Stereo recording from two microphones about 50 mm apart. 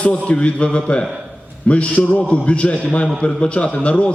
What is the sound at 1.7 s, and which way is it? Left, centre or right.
A man's voice, left.